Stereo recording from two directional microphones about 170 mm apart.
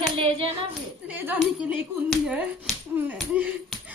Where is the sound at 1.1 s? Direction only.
10° right (ahead or behind).